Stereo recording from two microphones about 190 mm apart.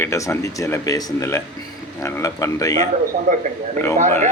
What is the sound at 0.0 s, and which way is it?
A man's voice, 15° left (ahead or behind).